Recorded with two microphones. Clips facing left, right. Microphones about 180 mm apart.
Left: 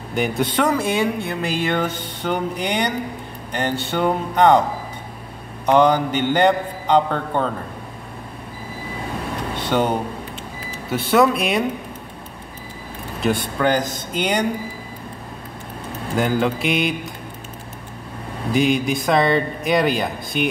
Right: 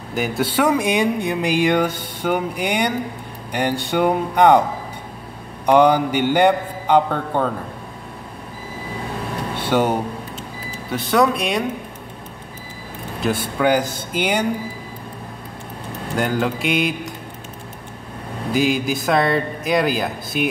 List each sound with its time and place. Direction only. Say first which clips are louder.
0.1 s speech: even; 5° right (ahead or behind)
5.7 s speech: right 1 dB; 10° right (ahead or behind)
9.6 s speech: right 2 dB; 10° right (ahead or behind)
10.9 s a man's voice: left 1 dB; centre (ahead or behind)
13.2 s speech: even; 5° right (ahead or behind)
16.2 s a man's voice: left 1 dB; centre (ahead or behind)
18.5 s a man's voice: left 1 dB; centre (ahead or behind)